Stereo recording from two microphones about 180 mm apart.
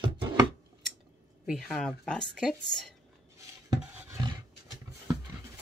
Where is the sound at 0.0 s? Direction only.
25° right (ahead or behind).